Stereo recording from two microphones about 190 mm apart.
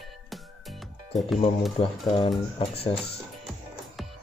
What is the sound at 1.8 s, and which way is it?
Speech, 25° left (ahead or behind).